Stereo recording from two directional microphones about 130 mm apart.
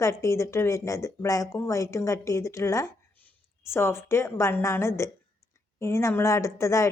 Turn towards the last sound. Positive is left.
turn(degrees=20)  # may be behind; listen again after turning